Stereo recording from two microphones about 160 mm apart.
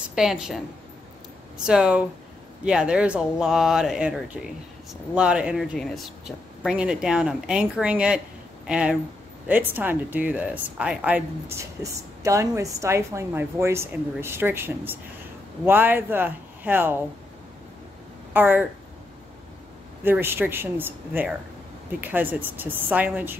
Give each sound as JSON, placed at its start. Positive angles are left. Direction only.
{"t": 0.1, "sound": "speech", "side_deg": -5}
{"t": 1.7, "sound": "a woman's voice", "side_deg": -5}
{"t": 11.5, "sound": "a woman's voice", "side_deg": -20}
{"t": 18.3, "sound": "speech", "side_deg": -10}
{"t": 20.0, "sound": "a woman's voice", "side_deg": -15}